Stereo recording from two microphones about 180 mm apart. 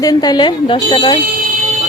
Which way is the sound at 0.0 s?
20° left (ahead or behind).